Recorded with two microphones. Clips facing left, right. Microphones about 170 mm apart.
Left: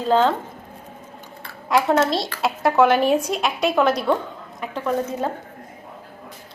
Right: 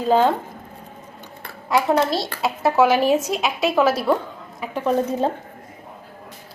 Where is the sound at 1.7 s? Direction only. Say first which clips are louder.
Even; centre (ahead or behind).